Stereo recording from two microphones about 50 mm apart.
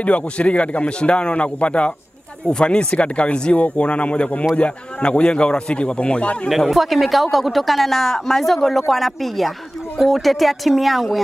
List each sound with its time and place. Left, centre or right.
0.0 s a man's voice: left
6.7 s speech: centre